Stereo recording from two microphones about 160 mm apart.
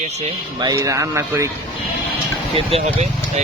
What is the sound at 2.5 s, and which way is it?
Speech, 35° right (ahead or behind).